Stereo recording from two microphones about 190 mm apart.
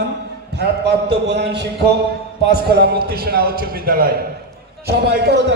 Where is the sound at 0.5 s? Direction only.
60° right (ahead or behind).